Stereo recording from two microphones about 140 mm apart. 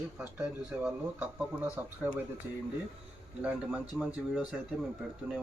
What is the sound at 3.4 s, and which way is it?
Speech, 10° right (ahead or behind).